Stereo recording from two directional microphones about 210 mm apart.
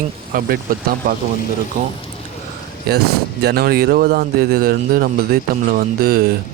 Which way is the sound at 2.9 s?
50° right (ahead or behind).